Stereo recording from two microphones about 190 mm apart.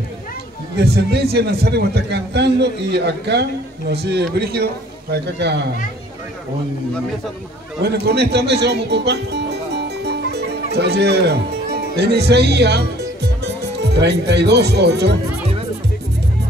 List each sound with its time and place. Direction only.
0.7 s a man's voice: 60° right (ahead or behind)
7.8 s speech: 60° right (ahead or behind)